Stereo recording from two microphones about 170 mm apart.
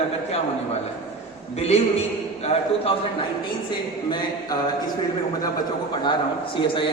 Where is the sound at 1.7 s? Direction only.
40° left (ahead or behind).